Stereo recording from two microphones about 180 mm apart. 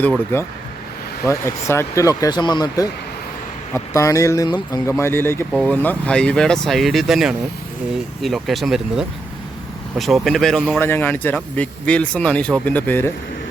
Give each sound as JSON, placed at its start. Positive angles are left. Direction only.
{"t": 0.3, "sound": "a man's voice", "side_deg": 15}
{"t": 5.5, "sound": "speech", "side_deg": 0}
{"t": 5.7, "sound": "a man's voice", "side_deg": 10}